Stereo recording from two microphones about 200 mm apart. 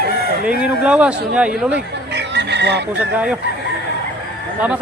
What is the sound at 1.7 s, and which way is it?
Chicken, 60° right (ahead or behind).